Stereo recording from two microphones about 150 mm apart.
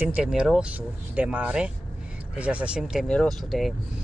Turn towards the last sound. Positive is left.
turn(degrees=0)  # may be behind; listen again after turning